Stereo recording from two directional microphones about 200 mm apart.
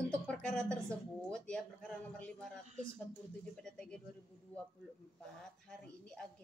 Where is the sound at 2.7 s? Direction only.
35° right (ahead or behind).